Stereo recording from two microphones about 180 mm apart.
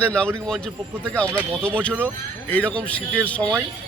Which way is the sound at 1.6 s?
5° left (ahead or behind).